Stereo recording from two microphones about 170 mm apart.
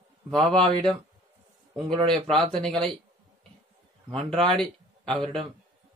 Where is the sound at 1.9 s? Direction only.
25° right (ahead or behind).